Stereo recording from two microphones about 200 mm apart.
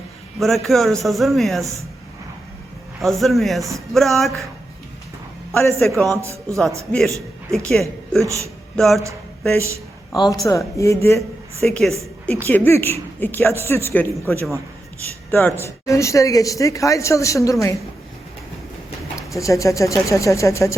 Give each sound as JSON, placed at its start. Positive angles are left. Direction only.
{"t": 0.3, "sound": "a man's voice", "side_deg": 0}
{"t": 3.0, "sound": "a man's voice", "side_deg": 0}
{"t": 5.8, "sound": "a man's voice", "side_deg": 5}
{"t": 6.1, "sound": "speech", "side_deg": -15}
{"t": 6.6, "sound": "a man's voice", "side_deg": 0}
{"t": 8.2, "sound": "speech", "side_deg": -15}
{"t": 8.7, "sound": "speech", "side_deg": 0}
{"t": 11.6, "sound": "a woman's voice", "side_deg": 0}
{"t": 19.3, "sound": "speech", "side_deg": 15}